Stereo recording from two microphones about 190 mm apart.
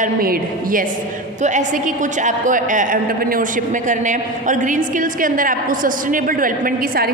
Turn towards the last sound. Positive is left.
turn(degrees=-50)  # may be behind; listen again after turning